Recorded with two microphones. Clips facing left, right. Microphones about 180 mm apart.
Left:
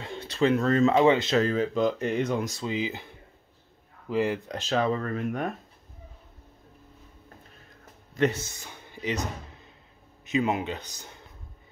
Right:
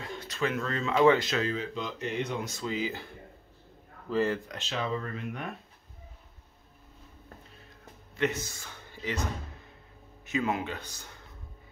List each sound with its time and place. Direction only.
0.0 s bird: 30° left (ahead or behind)
0.7 s speech: 45° left (ahead or behind)
0.9 s speech: 20° left (ahead or behind)
1.3 s speech: 45° left (ahead or behind)
2.6 s speech: 20° left (ahead or behind)
4.1 s speech: 15° left (ahead or behind)
4.5 s speech: 40° left (ahead or behind)
8.5 s speech: 20° left (ahead or behind)